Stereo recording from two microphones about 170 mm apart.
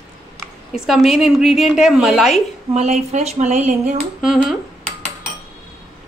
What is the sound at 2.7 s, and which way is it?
Speech, 40° right (ahead or behind).